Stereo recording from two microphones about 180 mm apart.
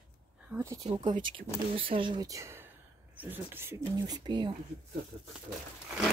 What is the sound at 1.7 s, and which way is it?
Speech, 30° right (ahead or behind).